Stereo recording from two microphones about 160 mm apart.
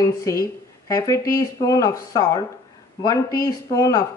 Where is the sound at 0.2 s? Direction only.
20° left (ahead or behind).